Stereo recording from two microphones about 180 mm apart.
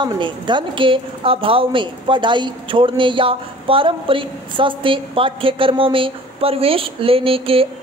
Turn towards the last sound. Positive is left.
turn(degrees=-30)  # may be behind; listen again after turning